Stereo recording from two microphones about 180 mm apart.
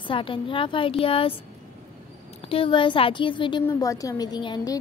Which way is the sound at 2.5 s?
30° left (ahead or behind).